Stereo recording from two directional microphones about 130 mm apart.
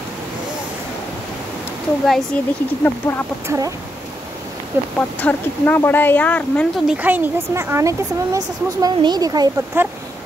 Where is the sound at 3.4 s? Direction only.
25° right (ahead or behind).